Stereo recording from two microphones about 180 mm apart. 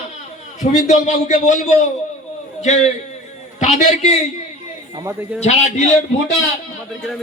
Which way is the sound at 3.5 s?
40° left (ahead or behind).